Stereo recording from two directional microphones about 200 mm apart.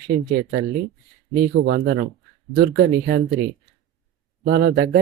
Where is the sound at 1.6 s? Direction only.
55° right (ahead or behind).